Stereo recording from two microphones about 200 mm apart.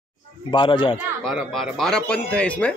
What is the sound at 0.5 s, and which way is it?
Speech, 25° left (ahead or behind).